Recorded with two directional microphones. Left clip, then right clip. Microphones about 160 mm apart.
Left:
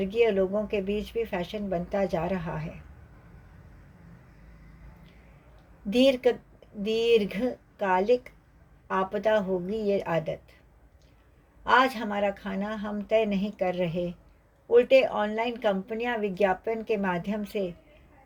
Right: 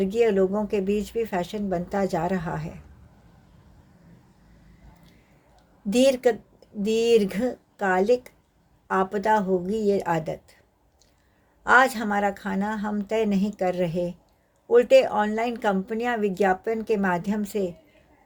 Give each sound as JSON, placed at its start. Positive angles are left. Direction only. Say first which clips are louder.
{"t": 0.0, "sound": "speech", "louder": "right 3 dB", "side_deg": -50}
{"t": 5.9, "sound": "speech", "louder": "right 2 dB", "side_deg": -50}
{"t": 11.6, "sound": "speech", "louder": "right 4 dB", "side_deg": -50}